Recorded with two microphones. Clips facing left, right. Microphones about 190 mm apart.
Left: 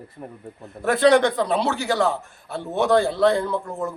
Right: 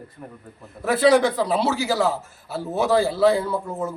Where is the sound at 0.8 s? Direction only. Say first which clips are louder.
Even; centre (ahead or behind).